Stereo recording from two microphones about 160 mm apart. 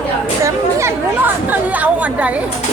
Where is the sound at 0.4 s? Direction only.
15° right (ahead or behind).